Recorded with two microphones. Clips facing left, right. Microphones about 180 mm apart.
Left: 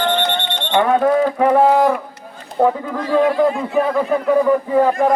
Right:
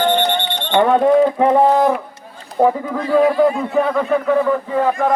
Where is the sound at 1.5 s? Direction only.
5° left (ahead or behind).